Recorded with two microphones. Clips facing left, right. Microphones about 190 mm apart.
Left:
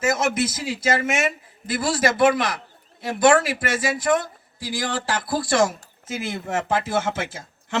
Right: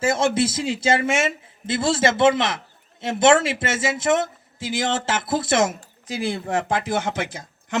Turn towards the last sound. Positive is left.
turn(degrees=-15)  # may be behind; listen again after turning